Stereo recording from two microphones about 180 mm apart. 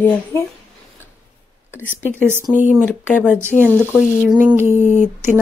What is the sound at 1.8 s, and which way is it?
Speech, 10° right (ahead or behind).